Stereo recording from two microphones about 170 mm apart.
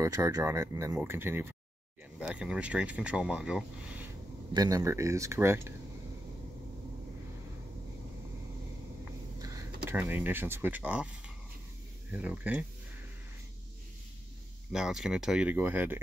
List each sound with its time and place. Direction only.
0.0 s speech: 20° right (ahead or behind)
4.6 s speech: 20° right (ahead or behind)
9.4 s speech: 20° right (ahead or behind)
12.1 s speech: 10° right (ahead or behind)
14.7 s speech: 5° right (ahead or behind)